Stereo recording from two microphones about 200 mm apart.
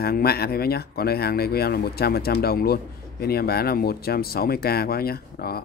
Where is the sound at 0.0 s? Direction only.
50° left (ahead or behind).